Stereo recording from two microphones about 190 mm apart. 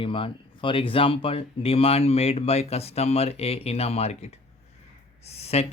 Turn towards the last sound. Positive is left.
turn(degrees=35)  # may be behind; listen again after turning